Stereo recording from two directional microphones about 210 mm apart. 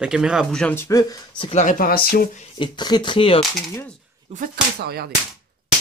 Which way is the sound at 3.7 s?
10° left (ahead or behind).